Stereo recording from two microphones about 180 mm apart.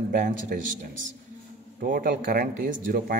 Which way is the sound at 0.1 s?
45° right (ahead or behind).